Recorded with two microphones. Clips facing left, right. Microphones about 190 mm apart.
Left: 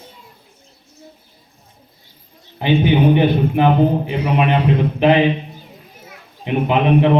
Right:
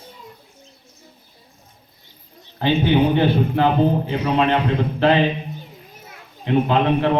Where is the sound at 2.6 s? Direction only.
15° left (ahead or behind).